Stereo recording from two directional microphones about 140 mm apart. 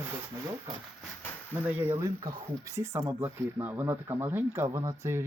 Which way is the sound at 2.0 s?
25° right (ahead or behind).